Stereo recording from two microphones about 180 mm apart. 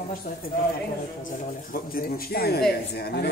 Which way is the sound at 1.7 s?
55° left (ahead or behind).